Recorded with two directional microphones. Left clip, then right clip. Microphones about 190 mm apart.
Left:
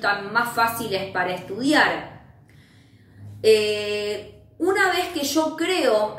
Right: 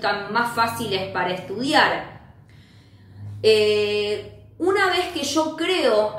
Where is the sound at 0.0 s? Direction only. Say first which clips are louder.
Even; 15° right (ahead or behind).